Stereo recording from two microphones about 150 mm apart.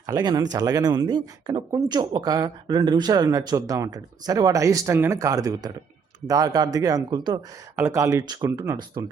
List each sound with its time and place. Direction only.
0.0 s speech: 25° right (ahead or behind)
7.8 s speech: 20° right (ahead or behind)